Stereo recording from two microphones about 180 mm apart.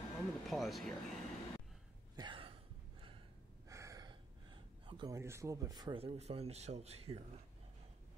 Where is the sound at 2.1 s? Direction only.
25° right (ahead or behind).